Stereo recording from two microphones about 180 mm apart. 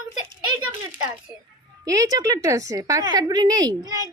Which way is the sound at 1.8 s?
20° right (ahead or behind).